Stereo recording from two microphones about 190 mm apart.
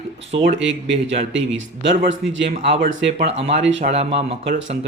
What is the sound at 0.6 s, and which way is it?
Speech, 75° right (ahead or behind).